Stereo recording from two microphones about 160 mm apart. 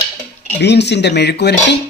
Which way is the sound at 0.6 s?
90° left.